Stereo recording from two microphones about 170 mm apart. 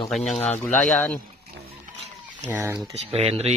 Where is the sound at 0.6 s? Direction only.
10° left (ahead or behind).